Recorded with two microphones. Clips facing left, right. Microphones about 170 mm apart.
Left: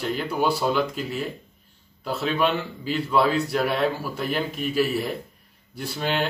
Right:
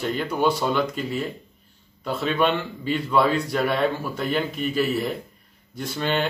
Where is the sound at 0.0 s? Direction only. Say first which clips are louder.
Right 2 dB; 5° left (ahead or behind).